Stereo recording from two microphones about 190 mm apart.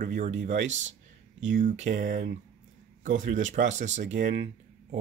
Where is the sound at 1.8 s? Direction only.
45° right (ahead or behind).